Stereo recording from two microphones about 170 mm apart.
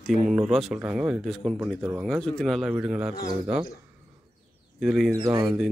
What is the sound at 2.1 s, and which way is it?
Speech, 5° left (ahead or behind).